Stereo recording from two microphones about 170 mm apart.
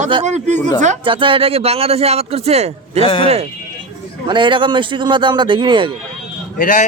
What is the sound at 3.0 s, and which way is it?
Speech, 30° left (ahead or behind).